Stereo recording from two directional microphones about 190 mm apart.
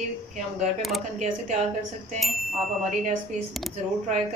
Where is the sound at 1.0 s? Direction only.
40° right (ahead or behind).